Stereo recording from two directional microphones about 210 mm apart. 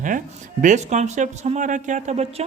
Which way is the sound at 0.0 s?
35° right (ahead or behind).